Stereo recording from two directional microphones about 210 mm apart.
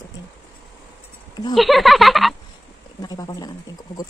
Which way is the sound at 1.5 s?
Centre (ahead or behind).